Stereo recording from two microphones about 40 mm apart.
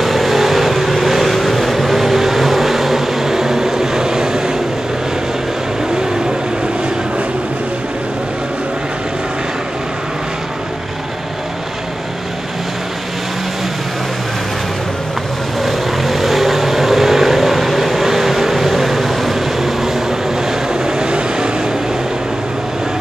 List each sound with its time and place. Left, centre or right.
0.0 s vehicle: centre
15.6 s vehicle: centre
20.8 s vehicle: centre